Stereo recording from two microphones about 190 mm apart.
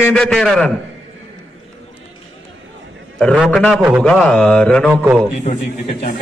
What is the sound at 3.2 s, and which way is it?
A man's voice, 5° left (ahead or behind).